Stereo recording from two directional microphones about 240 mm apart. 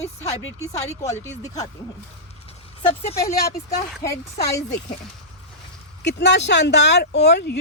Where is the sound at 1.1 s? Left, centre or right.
Left.